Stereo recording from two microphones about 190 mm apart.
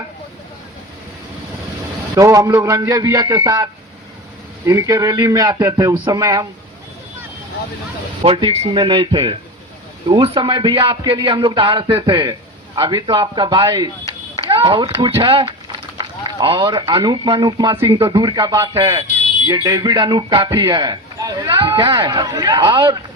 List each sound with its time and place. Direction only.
2.1 s speech: 20° right (ahead or behind)
8.2 s a man's voice: 30° right (ahead or behind)